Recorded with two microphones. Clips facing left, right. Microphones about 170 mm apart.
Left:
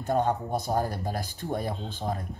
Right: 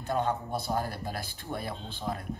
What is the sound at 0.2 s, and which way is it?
Speech, 45° left (ahead or behind).